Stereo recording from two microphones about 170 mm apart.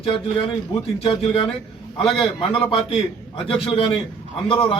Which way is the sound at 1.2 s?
35° left (ahead or behind).